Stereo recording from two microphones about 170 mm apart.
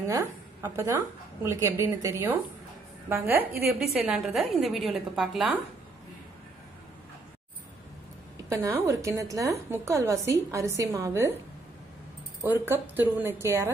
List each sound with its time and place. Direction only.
0.6 s a woman's voice: 20° right (ahead or behind); by 5.6 s centre (ahead or behind)
8.5 s a woman's voice: 15° right (ahead or behind)
12.4 s a woman's voice: 15° right (ahead or behind)